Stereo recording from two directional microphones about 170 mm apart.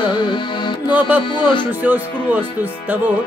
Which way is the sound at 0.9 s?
10° right (ahead or behind).